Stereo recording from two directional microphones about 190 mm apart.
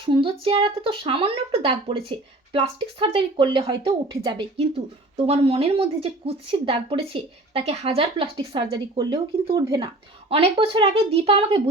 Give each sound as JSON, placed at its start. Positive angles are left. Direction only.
{"t": 0.0, "sound": "speech", "side_deg": -30}